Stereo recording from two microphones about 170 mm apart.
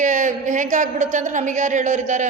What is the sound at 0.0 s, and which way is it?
A woman's voice, 45° right (ahead or behind).